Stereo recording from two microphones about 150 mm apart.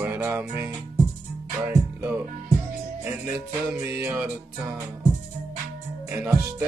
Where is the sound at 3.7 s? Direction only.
10° right (ahead or behind).